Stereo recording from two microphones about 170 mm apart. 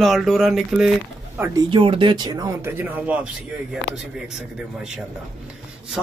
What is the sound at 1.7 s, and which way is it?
Speech, 30° right (ahead or behind).